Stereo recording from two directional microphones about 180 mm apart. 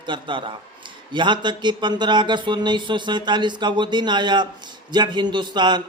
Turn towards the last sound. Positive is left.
turn(degrees=-25)  # may be behind; listen again after turning